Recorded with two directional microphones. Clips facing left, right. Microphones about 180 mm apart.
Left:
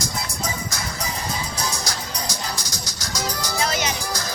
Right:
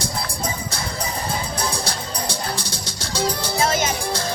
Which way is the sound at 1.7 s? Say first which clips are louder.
Right 3 dB; 30° right (ahead or behind).